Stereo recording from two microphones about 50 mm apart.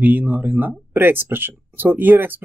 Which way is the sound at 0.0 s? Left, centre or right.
Right.